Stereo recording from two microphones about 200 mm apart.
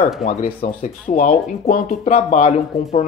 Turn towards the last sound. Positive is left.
turn(degrees=35)  # may be behind; listen again after turning